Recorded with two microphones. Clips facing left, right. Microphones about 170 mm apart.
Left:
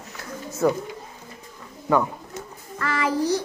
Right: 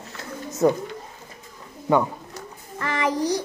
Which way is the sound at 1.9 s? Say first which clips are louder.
Right 1 dB; 20° right (ahead or behind).